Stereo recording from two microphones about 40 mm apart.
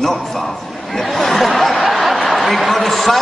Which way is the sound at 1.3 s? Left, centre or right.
Centre.